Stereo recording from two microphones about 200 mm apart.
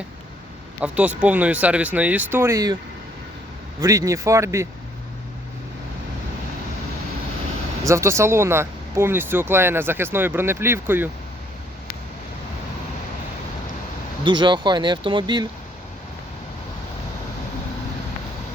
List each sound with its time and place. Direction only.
0.8 s speech: 5° right (ahead or behind)
3.8 s speech: 15° right (ahead or behind)
7.9 s speech: 15° right (ahead or behind)
14.3 s speech: 25° right (ahead or behind)